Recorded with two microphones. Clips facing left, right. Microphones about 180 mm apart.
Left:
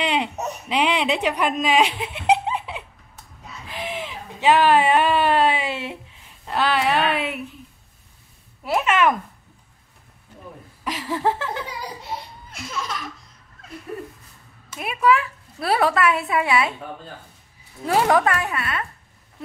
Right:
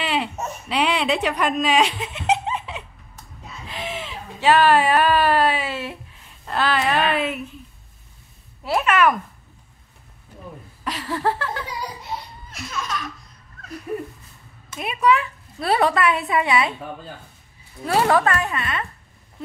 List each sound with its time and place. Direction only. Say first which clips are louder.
0.0 s a woman's voice: left 1 dB; 20° left (ahead or behind)
8.6 s a child's voice: right 1 dB; 20° left (ahead or behind)
10.8 s a sound: left 1 dB; 15° left (ahead or behind)
13.9 s a sound: right 4 dB; 15° right (ahead or behind)
14.8 s a woman's voice: even; 5° left (ahead or behind)
17.8 s a woman's voice: even; 15° left (ahead or behind)